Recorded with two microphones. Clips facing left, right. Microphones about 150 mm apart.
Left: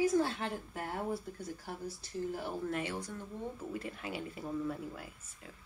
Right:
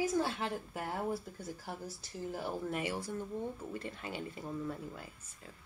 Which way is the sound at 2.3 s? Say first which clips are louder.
Right 2 dB; 10° right (ahead or behind).